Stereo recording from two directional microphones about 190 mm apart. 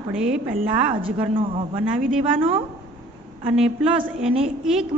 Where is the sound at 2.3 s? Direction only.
30° right (ahead or behind).